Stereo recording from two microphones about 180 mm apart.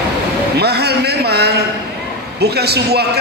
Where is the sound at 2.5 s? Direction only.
65° right (ahead or behind).